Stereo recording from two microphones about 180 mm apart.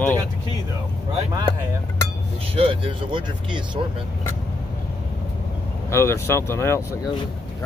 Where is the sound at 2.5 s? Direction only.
30° right (ahead or behind).